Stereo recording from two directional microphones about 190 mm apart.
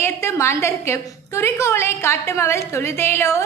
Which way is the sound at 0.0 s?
15° left (ahead or behind).